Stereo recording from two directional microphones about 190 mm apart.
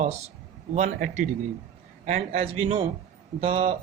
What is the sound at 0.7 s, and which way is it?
Speech, 40° right (ahead or behind).